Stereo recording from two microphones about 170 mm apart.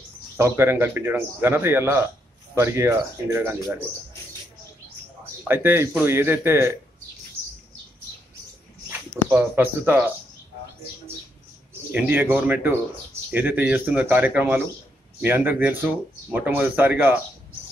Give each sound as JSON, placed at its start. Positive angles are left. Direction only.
{"t": 0.4, "sound": "speech", "side_deg": -15}
{"t": 5.4, "sound": "speech", "side_deg": -10}
{"t": 9.3, "sound": "speech", "side_deg": -10}
{"t": 11.9, "sound": "speech", "side_deg": -10}